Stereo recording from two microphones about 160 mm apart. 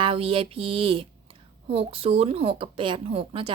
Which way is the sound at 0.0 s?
35° right (ahead or behind).